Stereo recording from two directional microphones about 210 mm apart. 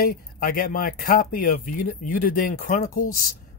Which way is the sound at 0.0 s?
45° left (ahead or behind).